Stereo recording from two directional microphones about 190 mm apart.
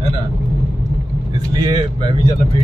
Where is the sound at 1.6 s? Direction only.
25° right (ahead or behind).